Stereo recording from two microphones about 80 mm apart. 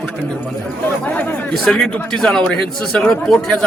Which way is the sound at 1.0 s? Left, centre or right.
Centre.